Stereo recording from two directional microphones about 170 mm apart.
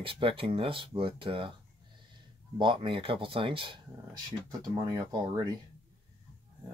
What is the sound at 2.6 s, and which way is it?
Speech, 30° right (ahead or behind).